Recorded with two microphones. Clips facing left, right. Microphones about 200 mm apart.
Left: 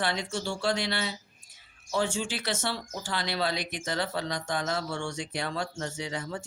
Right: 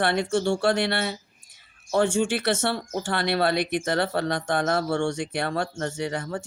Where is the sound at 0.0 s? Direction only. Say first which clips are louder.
Right 8 dB; 60° right (ahead or behind).